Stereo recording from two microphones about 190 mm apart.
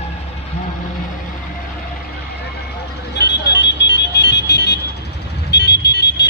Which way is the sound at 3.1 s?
60° left (ahead or behind).